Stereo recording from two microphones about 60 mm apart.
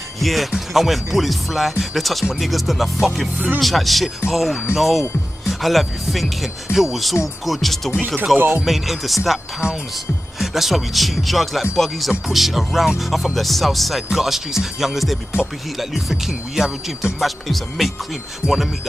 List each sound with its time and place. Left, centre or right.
0.2 s speech: centre
10.4 s speech: centre
18.4 s speech: right